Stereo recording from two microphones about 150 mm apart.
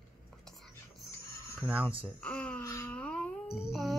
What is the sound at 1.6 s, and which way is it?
Speech, 10° right (ahead or behind).